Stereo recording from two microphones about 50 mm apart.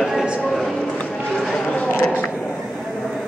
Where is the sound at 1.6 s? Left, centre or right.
Left.